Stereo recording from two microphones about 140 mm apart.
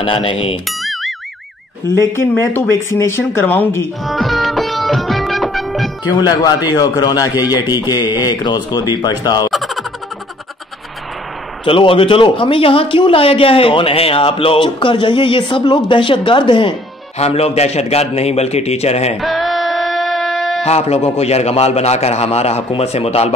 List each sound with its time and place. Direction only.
0.0 s speech: 40° left (ahead or behind)
0.7 s music: centre (ahead or behind)
1.9 s speech: 20° left (ahead or behind)
4.0 s music: centre (ahead or behind)
6.1 s a man's voice: 30° left (ahead or behind)
9.5 s a sound: centre (ahead or behind)
11.6 s speech: 40° left (ahead or behind)
17.2 s a man's voice: 45° left (ahead or behind)
19.1 s a sound: centre (ahead or behind)
20.6 s a man's voice: 50° left (ahead or behind)